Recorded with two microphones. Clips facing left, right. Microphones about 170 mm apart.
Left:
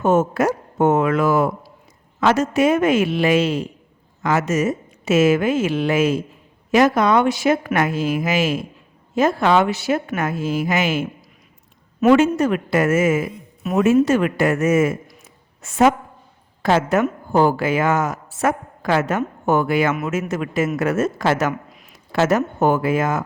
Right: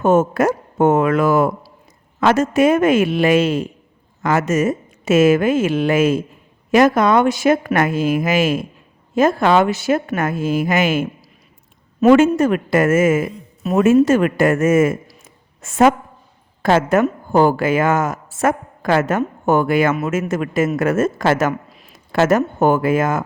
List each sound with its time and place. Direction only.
0.0 s a woman's voice: 50° right (ahead or behind)
12.1 s a woman's voice: 50° right (ahead or behind)
21.7 s a sound: 30° right (ahead or behind)
22.1 s a woman's voice: 50° right (ahead or behind)